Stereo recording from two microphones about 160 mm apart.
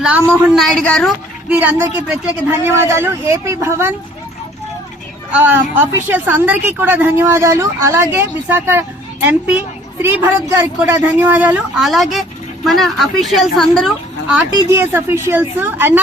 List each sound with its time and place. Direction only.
0.0 s speech: 5° right (ahead or behind)
1.5 s a woman's voice: 10° right (ahead or behind)
5.3 s a woman's voice: 10° right (ahead or behind)
14.5 s a woman's voice: 15° right (ahead or behind)